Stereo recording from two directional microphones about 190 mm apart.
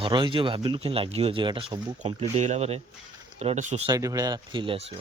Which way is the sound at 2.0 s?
35° right (ahead or behind).